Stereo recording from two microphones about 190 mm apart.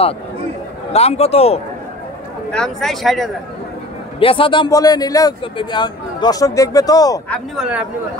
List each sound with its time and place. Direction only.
0.9 s a man's voice: 35° left (ahead or behind)
2.5 s speech: 5° left (ahead or behind)
4.2 s a man's voice: 25° left (ahead or behind)
7.2 s speech: centre (ahead or behind)